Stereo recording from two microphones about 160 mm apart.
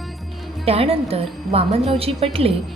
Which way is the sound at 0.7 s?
40° right (ahead or behind).